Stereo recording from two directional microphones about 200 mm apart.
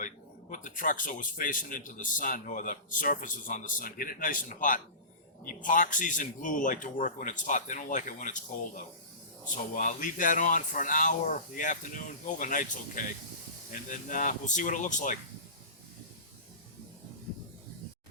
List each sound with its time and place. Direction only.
0.5 s a man's voice: 40° left (ahead or behind)